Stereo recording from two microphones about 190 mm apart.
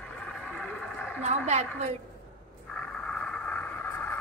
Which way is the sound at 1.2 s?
35° right (ahead or behind).